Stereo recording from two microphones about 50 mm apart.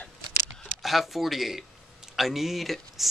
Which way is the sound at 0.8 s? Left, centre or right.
Centre.